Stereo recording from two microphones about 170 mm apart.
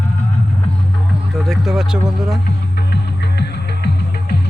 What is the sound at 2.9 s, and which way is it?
Music, 75° left (ahead or behind).